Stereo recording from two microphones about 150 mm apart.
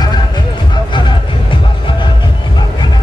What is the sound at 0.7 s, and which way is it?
Music, 30° left (ahead or behind).